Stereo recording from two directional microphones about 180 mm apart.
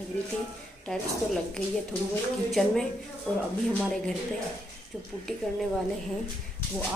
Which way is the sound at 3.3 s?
5° left (ahead or behind).